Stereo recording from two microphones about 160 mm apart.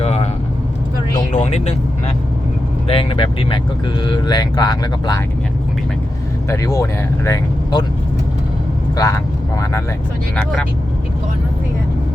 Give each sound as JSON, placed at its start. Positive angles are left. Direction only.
{"t": 0.0, "sound": "vehicle", "side_deg": 40}
{"t": 1.3, "sound": "vehicle", "side_deg": 45}
{"t": 2.8, "sound": "speech", "side_deg": 35}
{"t": 6.5, "sound": "speech", "side_deg": 20}
{"t": 9.0, "sound": "speech", "side_deg": 20}
{"t": 10.3, "sound": "speech", "side_deg": 5}